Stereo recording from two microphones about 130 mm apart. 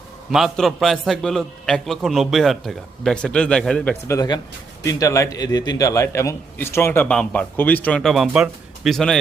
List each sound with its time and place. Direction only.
0.3 s a man's voice: centre (ahead or behind)
4.1 s a man's voice: 30° left (ahead or behind); by 9.1 s 5° left (ahead or behind)